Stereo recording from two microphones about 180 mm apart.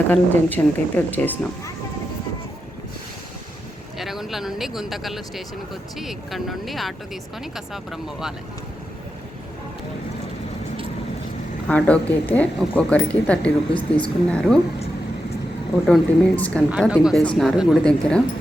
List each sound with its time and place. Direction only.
0.1 s speech: 10° left (ahead or behind)
3.9 s speech: centre (ahead or behind)
11.7 s speech: 10° left (ahead or behind)
15.9 s speech: 5° left (ahead or behind)